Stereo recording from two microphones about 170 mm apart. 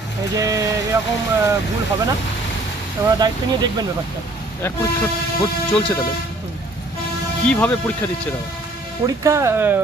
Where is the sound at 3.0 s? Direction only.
25° right (ahead or behind).